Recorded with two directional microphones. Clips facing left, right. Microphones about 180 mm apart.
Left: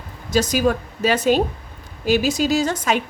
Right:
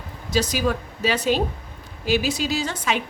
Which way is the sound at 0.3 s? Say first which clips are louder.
Left 4 dB; 45° left (ahead or behind).